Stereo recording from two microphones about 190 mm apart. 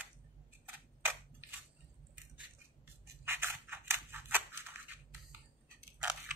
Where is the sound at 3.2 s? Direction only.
10° right (ahead or behind).